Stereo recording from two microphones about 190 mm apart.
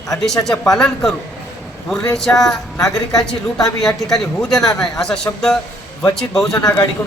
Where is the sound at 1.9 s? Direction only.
Centre (ahead or behind).